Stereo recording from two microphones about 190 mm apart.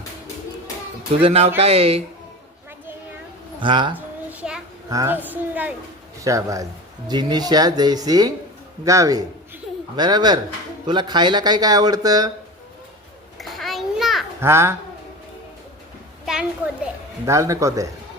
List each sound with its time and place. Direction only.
1.2 s speech: 35° right (ahead or behind)
3.6 s speech: 25° right (ahead or behind)
4.3 s a sound: 5° right (ahead or behind)
4.9 s a child's voice: 15° right (ahead or behind)
13.4 s a sound: centre (ahead or behind)
14.4 s a child's voice: 15° right (ahead or behind)
16.2 s children playing: 5° right (ahead or behind)
17.2 s a child's voice: 15° right (ahead or behind)